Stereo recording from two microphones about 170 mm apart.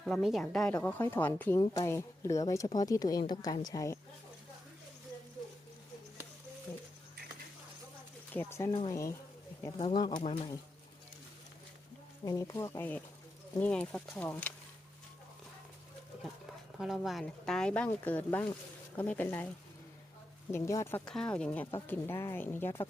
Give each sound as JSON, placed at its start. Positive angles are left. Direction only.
{"t": 0.0, "sound": "speech", "side_deg": 0}
{"t": 8.3, "sound": "speech", "side_deg": 15}
{"t": 9.7, "sound": "speech", "side_deg": 30}
{"t": 12.2, "sound": "speech", "side_deg": 20}
{"t": 16.7, "sound": "speech", "side_deg": 0}
{"t": 20.5, "sound": "speech", "side_deg": 15}